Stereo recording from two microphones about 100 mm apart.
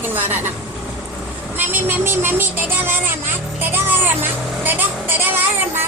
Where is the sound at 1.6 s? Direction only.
20° right (ahead or behind).